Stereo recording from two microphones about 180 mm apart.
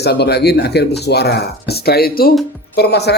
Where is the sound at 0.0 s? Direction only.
65° left (ahead or behind).